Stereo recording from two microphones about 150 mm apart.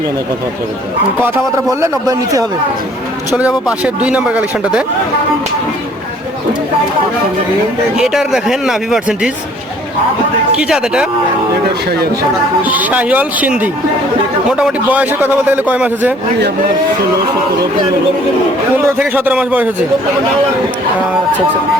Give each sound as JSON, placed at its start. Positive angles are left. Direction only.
{"t": 1.8, "sound": "a man's voice", "side_deg": -25}
{"t": 3.3, "sound": "a man's voice", "side_deg": -10}
{"t": 7.9, "sound": "speech", "side_deg": -5}
{"t": 10.6, "sound": "speech", "side_deg": -5}
{"t": 12.6, "sound": "a man's voice", "side_deg": -10}
{"t": 18.9, "sound": "a man's voice", "side_deg": -15}